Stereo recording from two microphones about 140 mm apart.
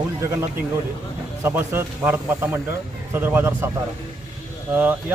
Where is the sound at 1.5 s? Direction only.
15° right (ahead or behind).